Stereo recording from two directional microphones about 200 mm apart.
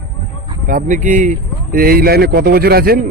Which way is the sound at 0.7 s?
40° right (ahead or behind).